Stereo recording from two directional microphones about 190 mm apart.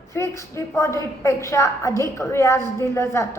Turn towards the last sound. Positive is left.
turn(degrees=15)  # may be behind; listen again after turning